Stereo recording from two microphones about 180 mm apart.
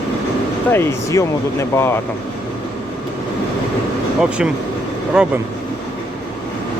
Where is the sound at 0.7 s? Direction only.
15° left (ahead or behind).